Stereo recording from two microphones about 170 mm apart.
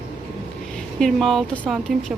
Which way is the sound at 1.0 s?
Centre (ahead or behind).